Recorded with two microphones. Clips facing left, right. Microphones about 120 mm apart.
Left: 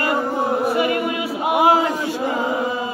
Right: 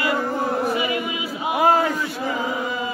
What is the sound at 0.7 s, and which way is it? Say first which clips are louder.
Chant: left 4 dB; 55° left (ahead or behind).